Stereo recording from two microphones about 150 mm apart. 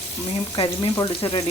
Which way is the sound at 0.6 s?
35° left (ahead or behind).